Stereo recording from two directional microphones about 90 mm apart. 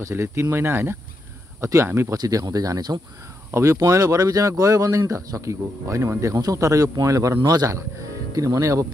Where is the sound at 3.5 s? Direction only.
35° right (ahead or behind).